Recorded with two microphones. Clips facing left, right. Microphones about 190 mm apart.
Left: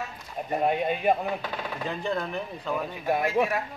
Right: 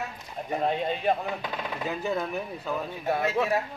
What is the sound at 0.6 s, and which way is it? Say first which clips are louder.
Speech: left 2 dB; 10° left (ahead or behind).